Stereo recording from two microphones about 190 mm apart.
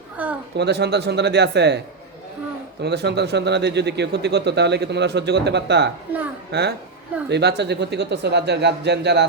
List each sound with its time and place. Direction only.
0.2 s speech: 10° right (ahead or behind)
0.5 s speech: 60° right (ahead or behind)
2.8 s speech: 60° right (ahead or behind)